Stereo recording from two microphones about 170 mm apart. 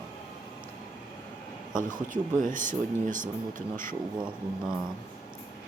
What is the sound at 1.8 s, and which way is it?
Speech, 50° right (ahead or behind).